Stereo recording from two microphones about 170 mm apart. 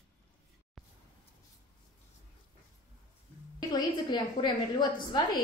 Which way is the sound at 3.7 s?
25° left (ahead or behind).